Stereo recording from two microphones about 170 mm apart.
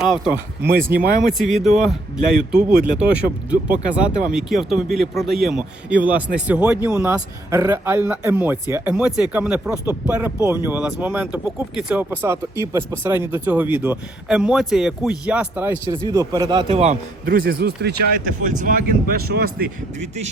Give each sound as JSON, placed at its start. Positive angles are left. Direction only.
{"t": 0.0, "sound": "a man's voice", "side_deg": 0}
{"t": 16.0, "sound": "a man's voice", "side_deg": -20}
{"t": 17.2, "sound": "speech", "side_deg": -60}
{"t": 18.4, "sound": "speech", "side_deg": -50}